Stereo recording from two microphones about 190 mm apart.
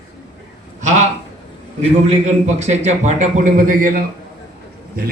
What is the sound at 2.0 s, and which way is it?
A man's voice, 35° right (ahead or behind).